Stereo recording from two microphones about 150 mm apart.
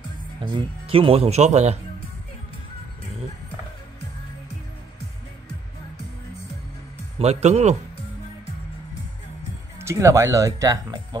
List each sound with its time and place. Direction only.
0.5 s speech: 35° right (ahead or behind)
7.2 s speech: 45° right (ahead or behind)
9.8 s speech: 20° right (ahead or behind)